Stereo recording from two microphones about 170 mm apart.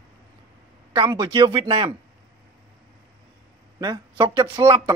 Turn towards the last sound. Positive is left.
turn(degrees=-20)  # may be behind; listen again after turning